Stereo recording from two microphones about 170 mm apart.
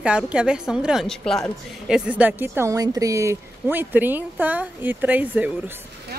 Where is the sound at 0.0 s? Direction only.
5° right (ahead or behind).